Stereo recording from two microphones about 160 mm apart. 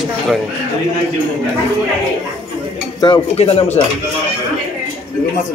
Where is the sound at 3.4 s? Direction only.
40° left (ahead or behind).